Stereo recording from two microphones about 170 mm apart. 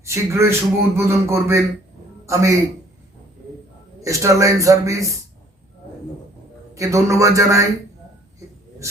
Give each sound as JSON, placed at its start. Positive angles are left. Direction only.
{"t": 0.0, "sound": "a man's voice", "side_deg": -15}
{"t": 4.0, "sound": "a man's voice", "side_deg": -20}
{"t": 6.7, "sound": "a man's voice", "side_deg": -20}